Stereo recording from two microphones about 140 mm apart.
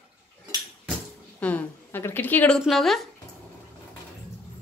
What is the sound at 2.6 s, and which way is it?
Speech, centre (ahead or behind).